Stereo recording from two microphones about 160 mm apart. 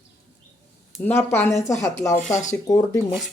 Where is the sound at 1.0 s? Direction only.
15° left (ahead or behind).